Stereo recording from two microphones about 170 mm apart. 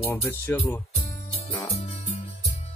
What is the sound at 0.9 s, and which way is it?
Music, 35° left (ahead or behind).